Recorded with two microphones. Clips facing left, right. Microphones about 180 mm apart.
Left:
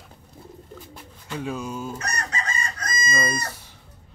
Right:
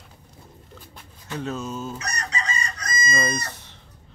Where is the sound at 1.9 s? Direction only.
55° left (ahead or behind).